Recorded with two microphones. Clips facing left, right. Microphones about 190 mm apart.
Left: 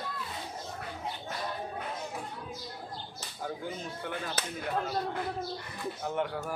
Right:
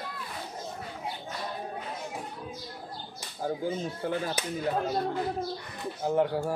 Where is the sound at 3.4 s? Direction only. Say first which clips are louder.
Right 7 dB; 30° right (ahead or behind).